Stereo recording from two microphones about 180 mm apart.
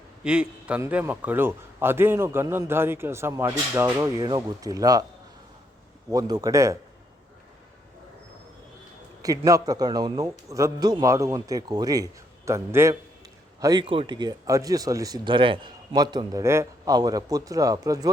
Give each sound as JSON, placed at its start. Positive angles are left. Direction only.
{"t": 0.3, "sound": "a man's voice", "side_deg": -5}
{"t": 6.1, "sound": "speech", "side_deg": -20}
{"t": 9.2, "sound": "speech", "side_deg": -20}